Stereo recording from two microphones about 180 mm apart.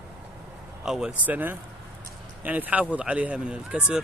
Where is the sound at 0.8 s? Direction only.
5° right (ahead or behind).